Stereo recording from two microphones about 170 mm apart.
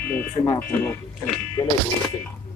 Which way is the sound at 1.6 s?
25° left (ahead or behind).